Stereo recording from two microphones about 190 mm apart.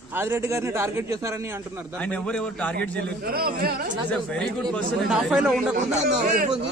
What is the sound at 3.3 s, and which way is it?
Speech, 50° right (ahead or behind).